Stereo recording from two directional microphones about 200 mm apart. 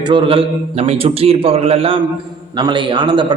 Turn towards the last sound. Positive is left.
turn(degrees=-25)  # may be behind; listen again after turning